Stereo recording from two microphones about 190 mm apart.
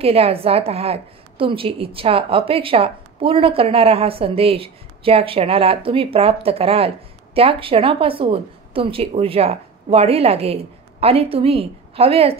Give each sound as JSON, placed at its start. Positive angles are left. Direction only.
{"t": 0.0, "sound": "a woman's voice", "side_deg": -30}